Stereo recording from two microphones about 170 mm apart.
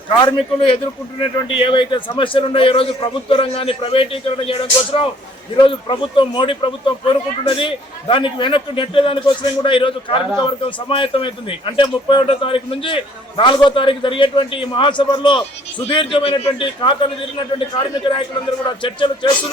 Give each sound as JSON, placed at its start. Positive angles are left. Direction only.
{"t": 0.2, "sound": "a man's voice", "side_deg": 25}
{"t": 18.8, "sound": "speech", "side_deg": 30}